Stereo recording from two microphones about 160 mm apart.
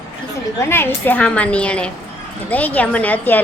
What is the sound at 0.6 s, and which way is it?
A woman's voice, 15° left (ahead or behind).